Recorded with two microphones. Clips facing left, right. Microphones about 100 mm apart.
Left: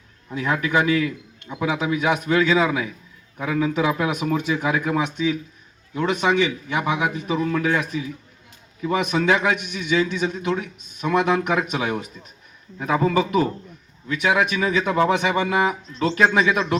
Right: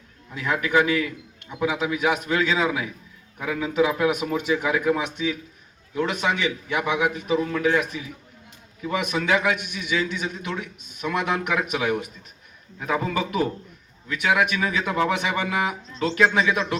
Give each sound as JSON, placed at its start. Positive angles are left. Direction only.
{"t": 0.3, "sound": "speech", "side_deg": 25}
{"t": 8.9, "sound": "speech", "side_deg": 25}